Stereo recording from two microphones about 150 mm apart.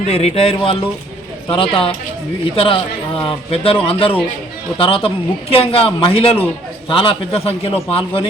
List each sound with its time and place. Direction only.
0.1 s a man's voice: 45° left (ahead or behind)